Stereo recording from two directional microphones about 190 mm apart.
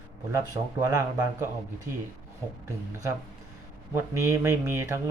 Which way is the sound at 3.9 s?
15° right (ahead or behind).